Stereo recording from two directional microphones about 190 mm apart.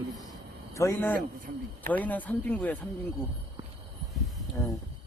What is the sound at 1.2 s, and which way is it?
Speech, 45° right (ahead or behind).